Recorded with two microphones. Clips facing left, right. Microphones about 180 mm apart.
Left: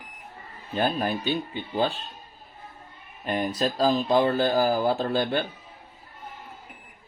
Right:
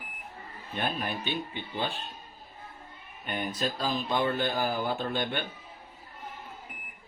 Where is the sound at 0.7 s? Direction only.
40° left (ahead or behind).